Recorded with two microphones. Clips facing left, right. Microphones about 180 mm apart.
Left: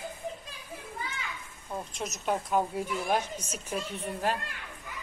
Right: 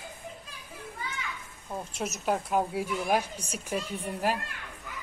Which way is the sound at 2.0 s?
5° right (ahead or behind).